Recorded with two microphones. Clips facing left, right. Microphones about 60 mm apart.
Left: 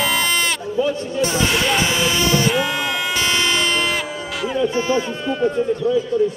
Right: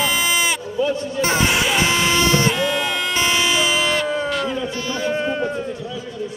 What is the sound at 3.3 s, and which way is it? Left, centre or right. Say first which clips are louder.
Emergency vehicle: even; centre.